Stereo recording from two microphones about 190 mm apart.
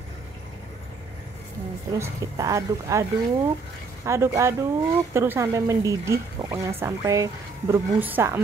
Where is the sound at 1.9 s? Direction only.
15° right (ahead or behind).